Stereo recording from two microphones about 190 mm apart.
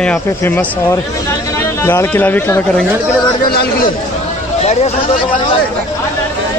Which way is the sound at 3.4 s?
55° left (ahead or behind).